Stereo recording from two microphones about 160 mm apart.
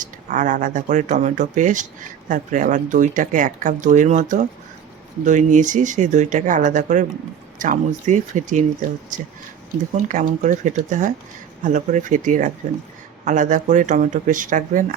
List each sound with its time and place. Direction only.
0.0 s speech: 55° right (ahead or behind)
9.9 s speech: 50° right (ahead or behind)